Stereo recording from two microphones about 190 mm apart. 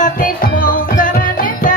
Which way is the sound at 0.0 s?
45° left (ahead or behind).